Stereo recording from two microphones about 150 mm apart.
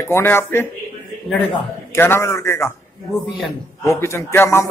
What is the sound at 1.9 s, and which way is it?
Speech, 15° left (ahead or behind).